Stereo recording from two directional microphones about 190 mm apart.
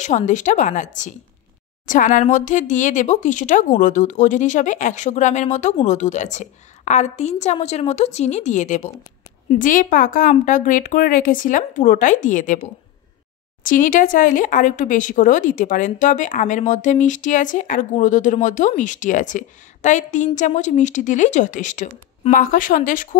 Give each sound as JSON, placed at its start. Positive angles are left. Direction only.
{"t": 0.3, "sound": "speech", "side_deg": 40}
{"t": 13.7, "sound": "speech", "side_deg": 45}